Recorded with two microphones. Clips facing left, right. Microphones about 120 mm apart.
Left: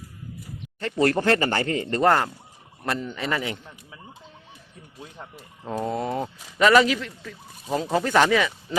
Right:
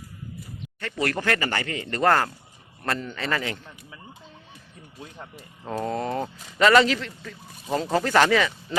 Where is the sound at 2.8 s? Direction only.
10° left (ahead or behind).